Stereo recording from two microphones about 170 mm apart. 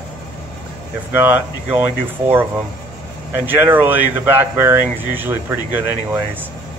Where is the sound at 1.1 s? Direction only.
10° right (ahead or behind).